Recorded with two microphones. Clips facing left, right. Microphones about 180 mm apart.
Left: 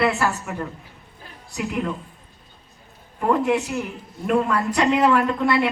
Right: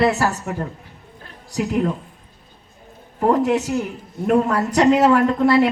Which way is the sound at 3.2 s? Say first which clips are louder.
Right 3 dB; 40° right (ahead or behind).